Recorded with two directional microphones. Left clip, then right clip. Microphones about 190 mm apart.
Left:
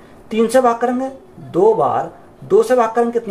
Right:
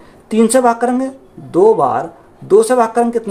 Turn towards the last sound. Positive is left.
turn(degrees=-40)  # may be behind; listen again after turning